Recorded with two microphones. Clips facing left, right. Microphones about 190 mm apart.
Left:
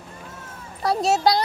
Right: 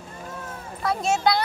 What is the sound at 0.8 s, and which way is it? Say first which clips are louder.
Speech: left 3 dB; 35° left (ahead or behind).